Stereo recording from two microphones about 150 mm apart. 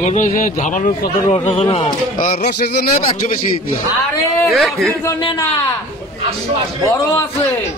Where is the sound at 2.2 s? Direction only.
75° left (ahead or behind).